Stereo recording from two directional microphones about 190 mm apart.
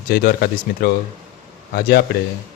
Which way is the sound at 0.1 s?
55° left (ahead or behind).